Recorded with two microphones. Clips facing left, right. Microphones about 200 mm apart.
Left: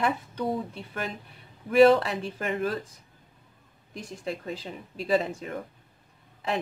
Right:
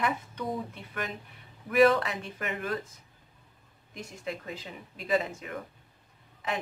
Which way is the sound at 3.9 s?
35° left (ahead or behind).